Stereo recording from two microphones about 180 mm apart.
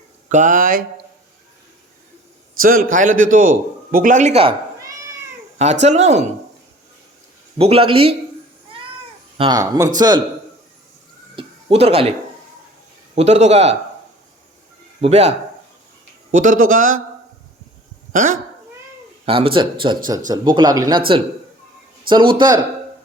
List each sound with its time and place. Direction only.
0.3 s a man's voice: 45° right (ahead or behind)
2.6 s a man's voice: 50° right (ahead or behind); by 4.5 s 35° right (ahead or behind)
5.8 s a man's voice: 40° right (ahead or behind)
7.6 s a man's voice: 30° right (ahead or behind)
9.4 s speech: 20° right (ahead or behind)
11.3 s a sound: 35° right (ahead or behind)
13.1 s a man's voice: 40° right (ahead or behind)
15.0 s a man's voice: 35° right (ahead or behind)
16.3 s a man's voice: 50° right (ahead or behind)
18.1 s speech: 50° right (ahead or behind)
19.2 s a man's voice: 30° right (ahead or behind)
22.1 s speech: 25° right (ahead or behind)